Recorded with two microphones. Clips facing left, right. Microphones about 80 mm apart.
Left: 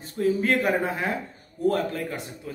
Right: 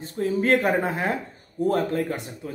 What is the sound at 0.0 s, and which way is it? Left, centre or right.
A man's voice, right.